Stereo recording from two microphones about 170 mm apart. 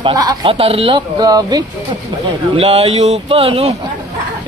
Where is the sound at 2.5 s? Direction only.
35° right (ahead or behind).